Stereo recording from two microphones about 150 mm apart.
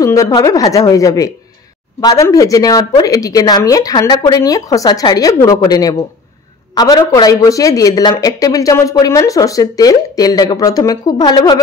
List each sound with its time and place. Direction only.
0.0 s speech: 20° left (ahead or behind)